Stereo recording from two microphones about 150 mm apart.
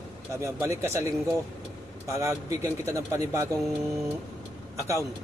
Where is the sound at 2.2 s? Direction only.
20° right (ahead or behind).